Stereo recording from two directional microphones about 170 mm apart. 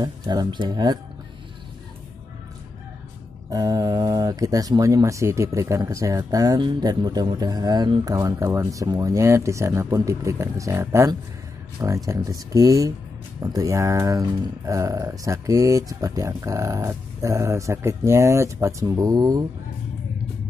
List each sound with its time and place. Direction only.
0.0 s speech: 25° right (ahead or behind)
3.4 s speech: 20° right (ahead or behind)